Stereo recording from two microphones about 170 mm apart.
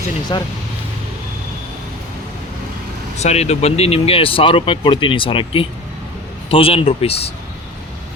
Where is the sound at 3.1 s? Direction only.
40° left (ahead or behind).